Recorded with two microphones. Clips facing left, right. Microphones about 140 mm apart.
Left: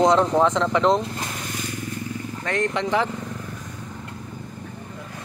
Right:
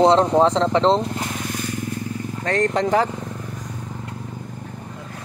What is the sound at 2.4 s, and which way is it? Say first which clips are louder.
Speech: right 4 dB; 40° right (ahead or behind).